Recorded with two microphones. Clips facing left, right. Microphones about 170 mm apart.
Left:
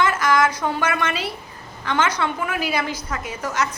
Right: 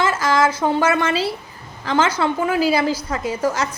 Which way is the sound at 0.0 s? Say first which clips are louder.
Right 1 dB; 30° right (ahead or behind).